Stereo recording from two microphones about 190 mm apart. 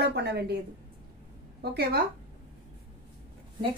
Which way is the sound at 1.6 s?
55° right (ahead or behind).